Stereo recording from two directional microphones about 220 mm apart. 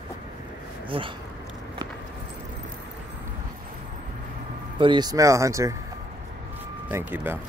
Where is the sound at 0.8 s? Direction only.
25° right (ahead or behind).